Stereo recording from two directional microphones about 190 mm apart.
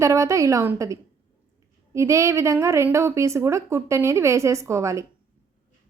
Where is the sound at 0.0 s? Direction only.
15° right (ahead or behind).